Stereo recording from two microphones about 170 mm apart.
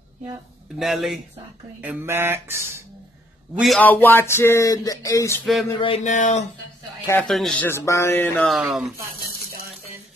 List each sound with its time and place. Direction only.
0.7 s speech: centre (ahead or behind)
1.8 s music: 10° right (ahead or behind)
3.5 s speech: centre (ahead or behind)
3.8 s speech: 10° left (ahead or behind)
5.4 s speech: centre (ahead or behind)
5.8 s speech: 35° left (ahead or behind)
6.0 s speech: 45° left (ahead or behind)
7.1 s speech: 5° left (ahead or behind)
7.6 s speech: 15° left (ahead or behind)
8.4 s speech: centre (ahead or behind)